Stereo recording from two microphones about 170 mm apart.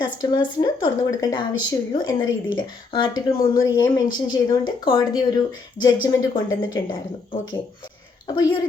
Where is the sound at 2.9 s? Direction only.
25° left (ahead or behind).